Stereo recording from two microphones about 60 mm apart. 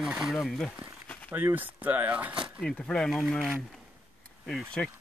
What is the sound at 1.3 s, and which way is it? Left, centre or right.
Speech, right.